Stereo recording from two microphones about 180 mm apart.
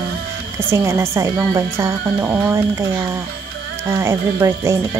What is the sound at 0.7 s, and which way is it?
Speech, 15° right (ahead or behind).